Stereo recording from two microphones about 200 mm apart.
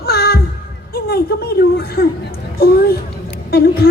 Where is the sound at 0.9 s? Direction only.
50° left (ahead or behind).